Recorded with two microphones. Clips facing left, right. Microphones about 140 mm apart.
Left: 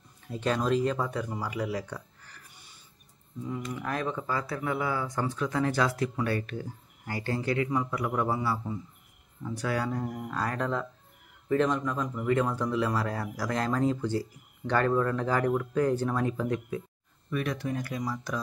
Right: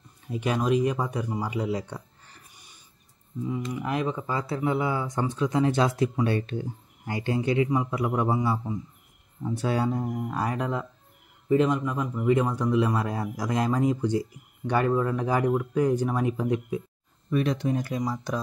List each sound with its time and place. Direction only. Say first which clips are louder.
0.3 s speech: right 2 dB; 10° right (ahead or behind)
3.7 s speech: right 3 dB; 15° right (ahead or behind)